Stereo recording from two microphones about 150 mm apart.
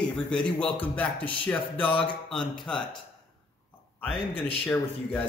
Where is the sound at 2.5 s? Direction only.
5° left (ahead or behind).